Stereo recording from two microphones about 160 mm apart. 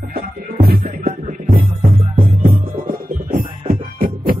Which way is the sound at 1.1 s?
50° right (ahead or behind).